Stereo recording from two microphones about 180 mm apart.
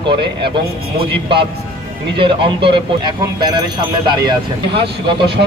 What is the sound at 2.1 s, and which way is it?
Speech, 30° right (ahead or behind).